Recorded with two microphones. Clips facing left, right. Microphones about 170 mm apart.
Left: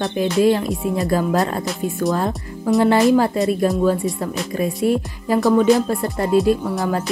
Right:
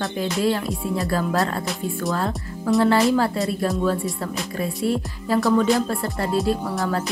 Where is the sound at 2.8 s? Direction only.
20° left (ahead or behind).